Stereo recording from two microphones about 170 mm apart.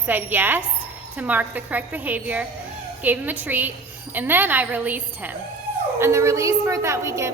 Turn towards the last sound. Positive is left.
turn(degrees=-15)  # may be behind; listen again after turning